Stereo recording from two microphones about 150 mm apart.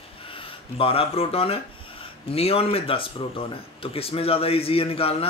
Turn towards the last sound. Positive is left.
turn(degrees=40)  # may be behind; listen again after turning